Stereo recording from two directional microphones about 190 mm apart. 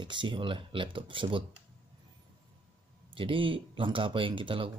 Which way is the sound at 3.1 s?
25° right (ahead or behind).